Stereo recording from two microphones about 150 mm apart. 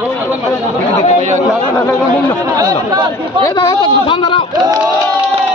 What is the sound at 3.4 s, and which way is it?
A man's voice, 25° left (ahead or behind).